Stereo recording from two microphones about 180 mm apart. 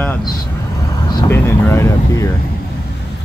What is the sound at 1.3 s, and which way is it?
Speech, 10° left (ahead or behind).